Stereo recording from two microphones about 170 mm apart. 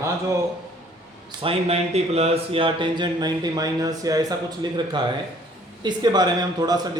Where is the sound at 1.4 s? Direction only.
35° right (ahead or behind).